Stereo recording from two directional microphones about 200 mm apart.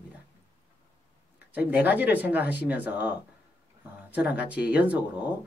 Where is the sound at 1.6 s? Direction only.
10° right (ahead or behind).